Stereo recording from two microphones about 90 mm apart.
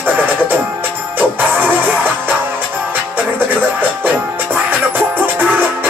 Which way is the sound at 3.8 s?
20° right (ahead or behind).